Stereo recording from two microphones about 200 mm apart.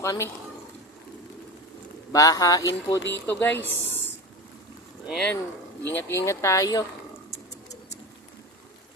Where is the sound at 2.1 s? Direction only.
15° left (ahead or behind).